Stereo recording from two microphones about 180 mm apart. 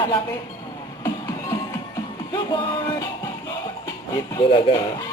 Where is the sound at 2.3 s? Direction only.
25° left (ahead or behind).